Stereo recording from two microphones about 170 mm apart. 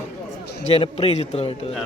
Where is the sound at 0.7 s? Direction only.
35° left (ahead or behind).